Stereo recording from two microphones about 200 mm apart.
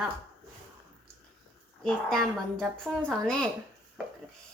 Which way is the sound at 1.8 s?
5° left (ahead or behind).